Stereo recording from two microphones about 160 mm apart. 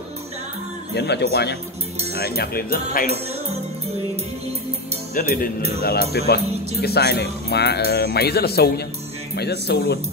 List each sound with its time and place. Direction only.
0.9 s speech: 90° left; by 3.1 s 65° left (ahead or behind)
5.1 s speech: 60° left (ahead or behind)
5.8 s speech: 70° left (ahead or behind); by 9.9 s 90° left